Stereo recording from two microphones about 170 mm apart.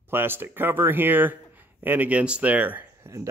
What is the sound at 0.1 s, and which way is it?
Speech, 15° right (ahead or behind).